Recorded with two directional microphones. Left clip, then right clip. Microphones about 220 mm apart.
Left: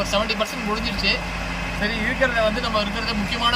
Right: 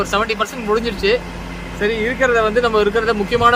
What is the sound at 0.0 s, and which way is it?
Speech, 15° right (ahead or behind).